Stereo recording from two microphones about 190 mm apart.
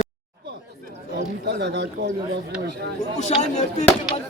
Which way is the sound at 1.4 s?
60° right (ahead or behind).